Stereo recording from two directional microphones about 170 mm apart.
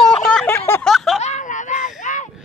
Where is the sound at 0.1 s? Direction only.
5° left (ahead or behind).